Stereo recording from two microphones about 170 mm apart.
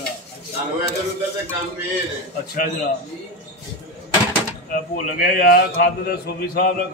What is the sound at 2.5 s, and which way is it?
Speech, 55° left (ahead or behind).